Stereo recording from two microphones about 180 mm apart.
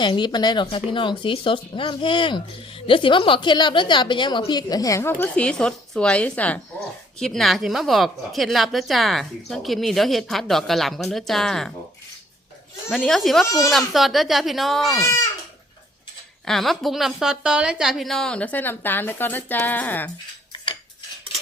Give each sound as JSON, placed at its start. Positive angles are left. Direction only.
{"t": 0.0, "sound": "speech", "side_deg": 25}
{"t": 12.9, "sound": "a woman's voice", "side_deg": 0}
{"t": 13.4, "sound": "speech", "side_deg": 15}
{"t": 13.7, "sound": "a woman's voice", "side_deg": 0}
{"t": 16.5, "sound": "a woman's voice", "side_deg": 0}